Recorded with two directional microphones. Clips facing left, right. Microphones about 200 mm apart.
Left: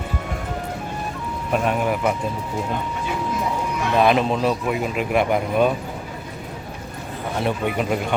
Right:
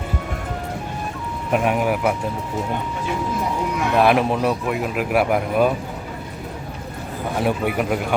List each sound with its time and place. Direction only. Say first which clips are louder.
1.5 s speech: right 2 dB; 10° right (ahead or behind)
3.9 s speech: right 1 dB; 5° right (ahead or behind)
7.3 s speech: right 2 dB; 10° right (ahead or behind)